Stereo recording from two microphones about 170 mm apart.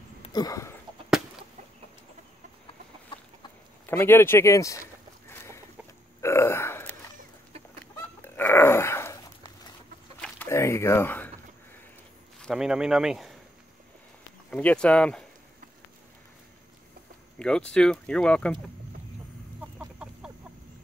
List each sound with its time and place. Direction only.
0.2 s a sound: 25° left (ahead or behind)
3.8 s speech: 15° left (ahead or behind)
5.3 s chicken: 15° left (ahead or behind)
6.2 s burping: 15° left (ahead or behind)
8.2 s dog: 10° left (ahead or behind)
10.2 s a sound: 15° left (ahead or behind)
12.4 s speech: centre (ahead or behind)
14.5 s speech: 10° left (ahead or behind)
17.4 s speech: 5° left (ahead or behind)